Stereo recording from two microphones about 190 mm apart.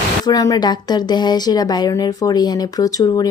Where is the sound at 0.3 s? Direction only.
20° left (ahead or behind).